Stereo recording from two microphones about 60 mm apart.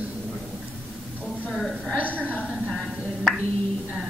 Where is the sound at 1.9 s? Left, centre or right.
Right.